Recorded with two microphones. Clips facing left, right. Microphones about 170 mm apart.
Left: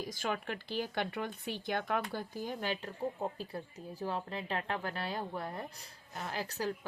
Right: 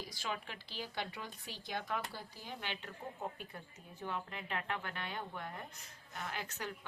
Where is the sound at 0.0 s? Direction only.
50° left (ahead or behind).